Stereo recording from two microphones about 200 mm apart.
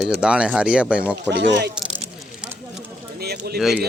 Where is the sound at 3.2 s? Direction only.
50° right (ahead or behind).